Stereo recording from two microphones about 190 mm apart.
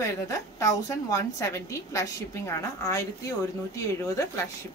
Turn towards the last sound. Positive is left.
turn(degrees=15)  # may be behind; listen again after turning